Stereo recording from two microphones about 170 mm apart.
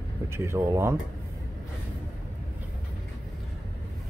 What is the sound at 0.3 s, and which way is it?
Speech, 15° right (ahead or behind).